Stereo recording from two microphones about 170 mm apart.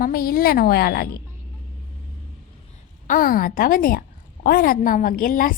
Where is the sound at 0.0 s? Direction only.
60° left (ahead or behind).